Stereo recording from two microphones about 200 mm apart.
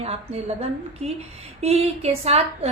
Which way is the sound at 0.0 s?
30° right (ahead or behind).